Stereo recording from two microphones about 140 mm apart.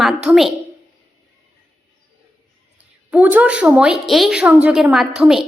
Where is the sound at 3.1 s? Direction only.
10° right (ahead or behind).